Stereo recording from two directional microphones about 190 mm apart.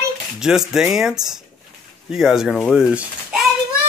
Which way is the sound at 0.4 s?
5° right (ahead or behind).